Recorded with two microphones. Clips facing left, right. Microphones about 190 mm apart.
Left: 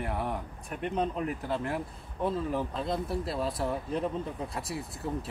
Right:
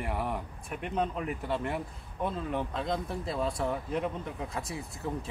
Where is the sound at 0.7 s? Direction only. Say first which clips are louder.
Left 4 dB; 35° left (ahead or behind).